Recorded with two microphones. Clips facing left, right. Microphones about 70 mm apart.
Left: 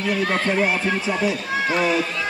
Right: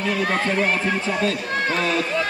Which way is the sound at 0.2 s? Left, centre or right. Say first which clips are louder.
Left 1 dB; centre.